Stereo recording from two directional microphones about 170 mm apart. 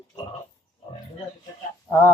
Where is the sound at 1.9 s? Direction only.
15° left (ahead or behind).